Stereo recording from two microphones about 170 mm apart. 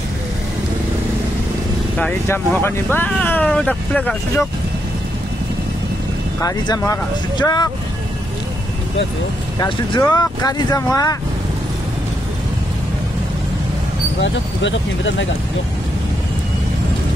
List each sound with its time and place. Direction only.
2.0 s speech: 10° left (ahead or behind)
6.4 s speech: 20° left (ahead or behind)
9.6 s speech: 25° left (ahead or behind)
14.2 s speech: 90° left